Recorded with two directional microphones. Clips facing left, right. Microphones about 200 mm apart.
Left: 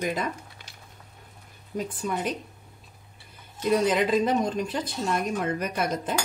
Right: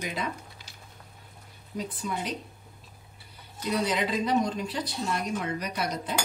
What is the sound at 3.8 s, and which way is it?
A woman's voice, 50° left (ahead or behind).